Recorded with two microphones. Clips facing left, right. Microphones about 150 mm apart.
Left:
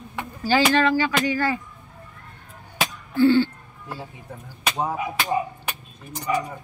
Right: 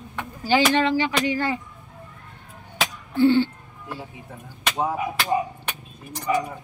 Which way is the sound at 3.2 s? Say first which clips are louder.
Left 1 dB; 20° right (ahead or behind).